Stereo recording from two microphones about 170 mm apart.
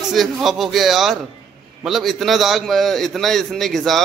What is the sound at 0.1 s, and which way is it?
A man's voice, centre (ahead or behind).